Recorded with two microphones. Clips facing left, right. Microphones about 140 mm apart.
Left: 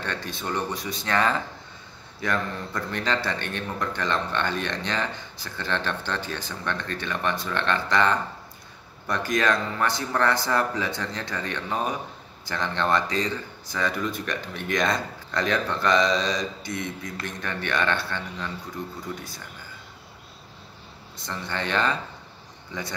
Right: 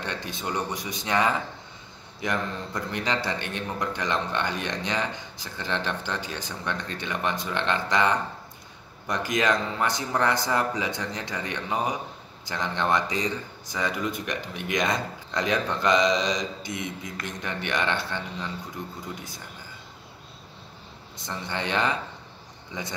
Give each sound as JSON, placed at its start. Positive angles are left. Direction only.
{"t": 0.0, "sound": "a man's voice", "side_deg": -15}
{"t": 21.3, "sound": "a man's voice", "side_deg": -20}